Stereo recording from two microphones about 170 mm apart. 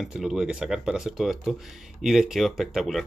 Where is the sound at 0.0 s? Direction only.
5° right (ahead or behind).